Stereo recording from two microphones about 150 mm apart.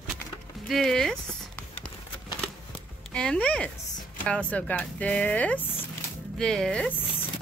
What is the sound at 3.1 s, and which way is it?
Speech, 5° left (ahead or behind).